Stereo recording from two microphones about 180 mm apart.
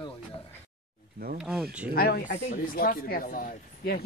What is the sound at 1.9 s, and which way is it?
Speech, 55° left (ahead or behind).